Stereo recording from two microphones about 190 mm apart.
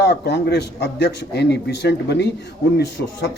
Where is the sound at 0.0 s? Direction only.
60° left (ahead or behind).